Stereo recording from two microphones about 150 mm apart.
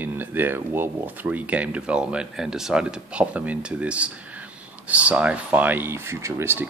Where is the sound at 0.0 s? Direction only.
15° right (ahead or behind).